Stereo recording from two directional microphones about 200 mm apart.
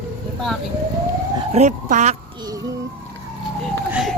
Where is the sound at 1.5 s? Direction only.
35° right (ahead or behind).